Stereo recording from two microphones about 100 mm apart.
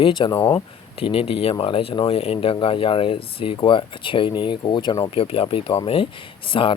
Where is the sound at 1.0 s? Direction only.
70° left (ahead or behind).